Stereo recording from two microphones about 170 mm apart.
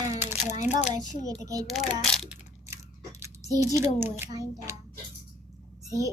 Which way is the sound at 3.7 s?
15° right (ahead or behind).